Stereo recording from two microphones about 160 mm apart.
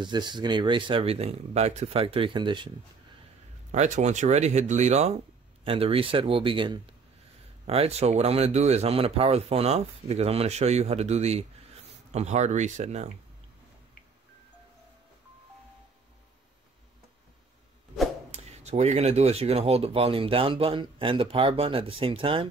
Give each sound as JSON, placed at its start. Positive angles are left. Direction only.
{"t": 0.0, "sound": "speech", "side_deg": -25}
{"t": 3.7, "sound": "speech", "side_deg": -45}
{"t": 18.3, "sound": "speech", "side_deg": -45}